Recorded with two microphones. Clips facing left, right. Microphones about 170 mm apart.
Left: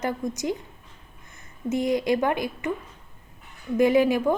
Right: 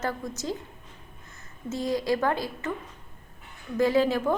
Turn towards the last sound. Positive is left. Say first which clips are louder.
# left 3 dB
turn(degrees=15)  # may be behind; listen again after turning